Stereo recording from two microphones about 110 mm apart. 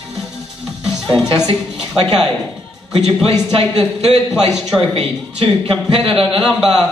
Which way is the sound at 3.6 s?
65° right (ahead or behind).